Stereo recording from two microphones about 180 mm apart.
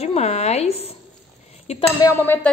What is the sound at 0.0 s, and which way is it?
Speech, 35° left (ahead or behind).